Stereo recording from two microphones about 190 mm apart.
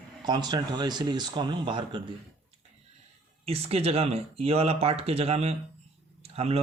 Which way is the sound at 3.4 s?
30° right (ahead or behind).